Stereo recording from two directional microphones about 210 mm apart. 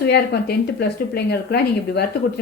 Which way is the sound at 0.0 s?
50° left (ahead or behind).